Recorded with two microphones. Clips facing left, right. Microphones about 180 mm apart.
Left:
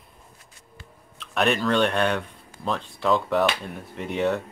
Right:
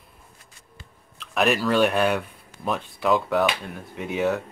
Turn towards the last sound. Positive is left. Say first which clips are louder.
# even
turn(degrees=0)  # may be behind; listen again after turning